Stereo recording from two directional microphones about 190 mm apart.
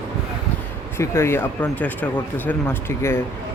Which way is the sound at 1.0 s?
15° left (ahead or behind).